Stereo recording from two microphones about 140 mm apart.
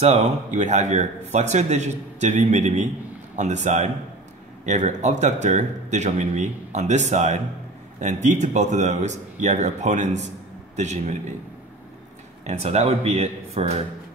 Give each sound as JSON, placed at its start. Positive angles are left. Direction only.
{"t": 0.0, "sound": "speech", "side_deg": -55}
{"t": 12.4, "sound": "speech", "side_deg": -50}